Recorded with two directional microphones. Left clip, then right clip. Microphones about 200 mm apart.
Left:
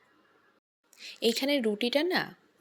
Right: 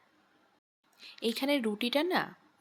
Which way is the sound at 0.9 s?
10° left (ahead or behind).